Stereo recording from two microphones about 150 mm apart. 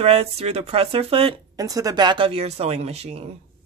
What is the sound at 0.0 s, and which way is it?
A woman's voice, 40° right (ahead or behind).